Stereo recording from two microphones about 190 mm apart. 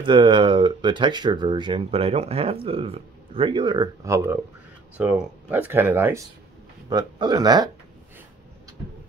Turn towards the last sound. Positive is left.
turn(degrees=-20)  # may be behind; listen again after turning